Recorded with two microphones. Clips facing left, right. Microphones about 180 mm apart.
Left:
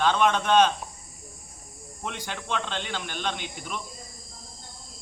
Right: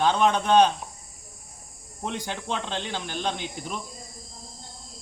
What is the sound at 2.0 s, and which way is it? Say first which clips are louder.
Speech: right 3 dB; 25° right (ahead or behind).